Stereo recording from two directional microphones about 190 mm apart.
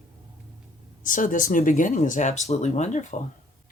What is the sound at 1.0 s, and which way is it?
Speech, 45° left (ahead or behind).